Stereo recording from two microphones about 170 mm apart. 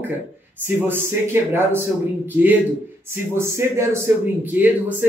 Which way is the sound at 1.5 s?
15° right (ahead or behind).